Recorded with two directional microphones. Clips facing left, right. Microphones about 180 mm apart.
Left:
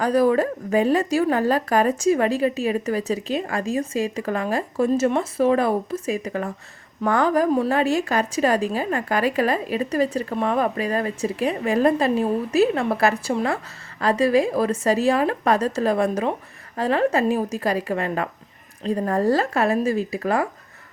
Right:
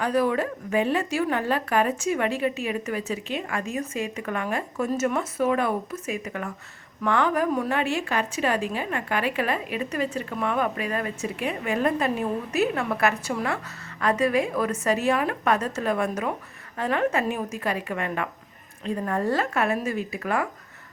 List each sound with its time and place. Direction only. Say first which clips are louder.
0.0 s a woman's voice: left 5 dB; 40° left (ahead or behind)